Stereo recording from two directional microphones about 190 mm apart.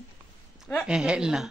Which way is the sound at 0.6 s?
Centre (ahead or behind).